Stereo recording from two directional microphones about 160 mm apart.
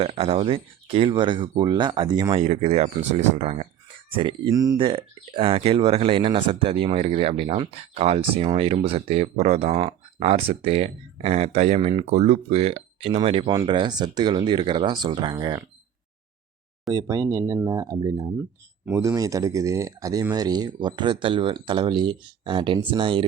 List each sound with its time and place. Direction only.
0.0 s speech: 40° right (ahead or behind)
2.4 s speech: 40° right (ahead or behind)
16.9 s speech: 25° right (ahead or behind)